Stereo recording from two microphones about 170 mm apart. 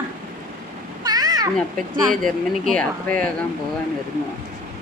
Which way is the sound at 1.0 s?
20° right (ahead or behind).